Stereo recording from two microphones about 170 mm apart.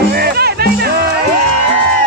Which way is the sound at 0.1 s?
65° right (ahead or behind).